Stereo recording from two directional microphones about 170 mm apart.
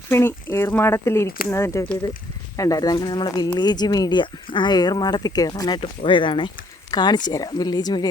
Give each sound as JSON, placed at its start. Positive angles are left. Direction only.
{"t": 0.1, "sound": "speech", "side_deg": 15}